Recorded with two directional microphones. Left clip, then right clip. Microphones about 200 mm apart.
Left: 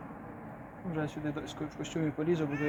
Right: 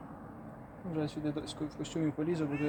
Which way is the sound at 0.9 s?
15° right (ahead or behind).